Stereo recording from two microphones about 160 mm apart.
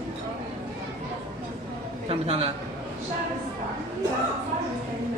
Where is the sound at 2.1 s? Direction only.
40° right (ahead or behind).